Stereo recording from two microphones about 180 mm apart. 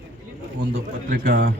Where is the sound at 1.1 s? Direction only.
50° right (ahead or behind).